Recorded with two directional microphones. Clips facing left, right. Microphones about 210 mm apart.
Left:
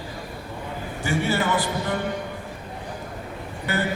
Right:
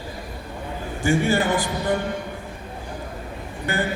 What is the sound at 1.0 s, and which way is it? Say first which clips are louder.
Speech: right 4 dB; 45° right (ahead or behind).